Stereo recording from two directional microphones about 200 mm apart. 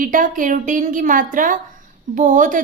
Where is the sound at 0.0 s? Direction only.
40° right (ahead or behind).